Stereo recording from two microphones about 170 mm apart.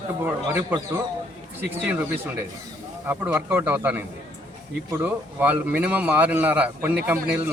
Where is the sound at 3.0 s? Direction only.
10° right (ahead or behind).